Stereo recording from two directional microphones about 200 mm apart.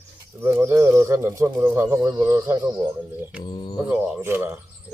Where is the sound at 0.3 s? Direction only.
15° right (ahead or behind).